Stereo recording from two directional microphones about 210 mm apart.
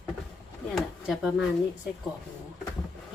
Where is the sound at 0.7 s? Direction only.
Centre (ahead or behind).